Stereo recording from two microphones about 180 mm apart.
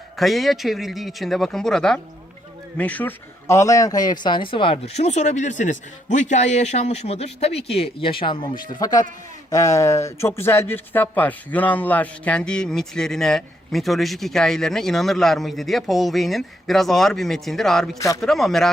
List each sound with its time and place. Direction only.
0.2 s a man's voice: centre (ahead or behind)